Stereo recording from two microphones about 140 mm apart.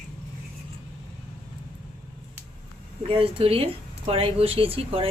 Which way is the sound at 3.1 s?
40° right (ahead or behind).